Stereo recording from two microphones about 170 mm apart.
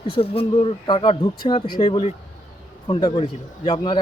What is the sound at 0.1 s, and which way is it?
Speech, 35° left (ahead or behind).